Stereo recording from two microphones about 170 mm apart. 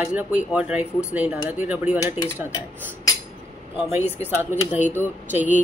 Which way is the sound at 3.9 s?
10° right (ahead or behind).